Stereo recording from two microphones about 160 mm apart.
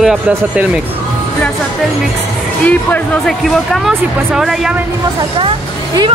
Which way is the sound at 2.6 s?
10° left (ahead or behind).